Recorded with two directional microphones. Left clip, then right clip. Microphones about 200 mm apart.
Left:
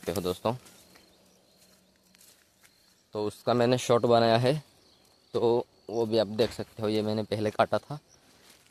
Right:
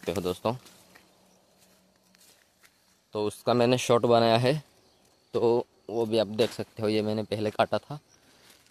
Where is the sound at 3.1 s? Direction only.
15° right (ahead or behind).